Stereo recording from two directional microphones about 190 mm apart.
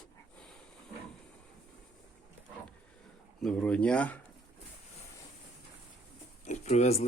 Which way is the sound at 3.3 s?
5° left (ahead or behind).